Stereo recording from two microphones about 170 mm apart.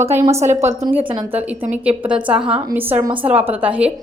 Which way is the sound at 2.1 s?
5° right (ahead or behind).